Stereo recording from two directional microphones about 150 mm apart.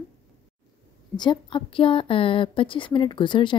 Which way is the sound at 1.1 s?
30° left (ahead or behind).